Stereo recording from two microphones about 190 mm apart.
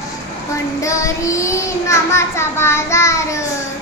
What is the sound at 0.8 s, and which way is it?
Child singing, 15° left (ahead or behind).